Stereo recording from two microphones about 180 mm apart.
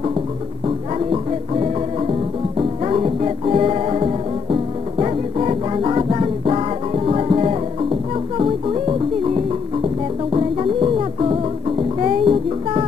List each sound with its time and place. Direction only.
0.9 s music: 30° right (ahead or behind)